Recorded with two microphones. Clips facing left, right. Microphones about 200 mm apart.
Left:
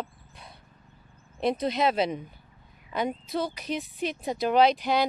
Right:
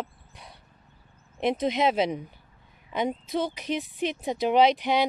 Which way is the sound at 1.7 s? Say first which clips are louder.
Right 2 dB; 15° right (ahead or behind).